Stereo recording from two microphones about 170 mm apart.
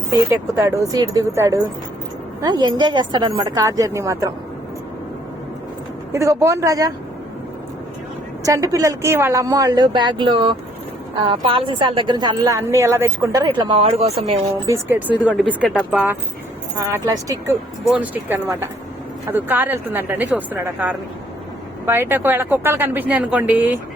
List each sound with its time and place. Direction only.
0.1 s a woman's voice: 15° right (ahead or behind)
6.1 s speech: 15° right (ahead or behind)
8.4 s a woman's voice: 20° right (ahead or behind); by 14.3 s 35° right (ahead or behind)
14.7 s speech: 10° right (ahead or behind)
16.7 s speech: 20° right (ahead or behind)